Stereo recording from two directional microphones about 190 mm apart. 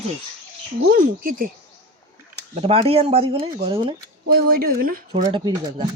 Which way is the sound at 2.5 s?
30° right (ahead or behind).